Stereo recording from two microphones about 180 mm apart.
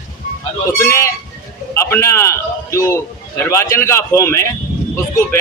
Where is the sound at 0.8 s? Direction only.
15° left (ahead or behind).